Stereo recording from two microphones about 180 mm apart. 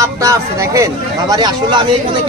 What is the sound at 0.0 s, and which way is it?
Speech, 20° right (ahead or behind).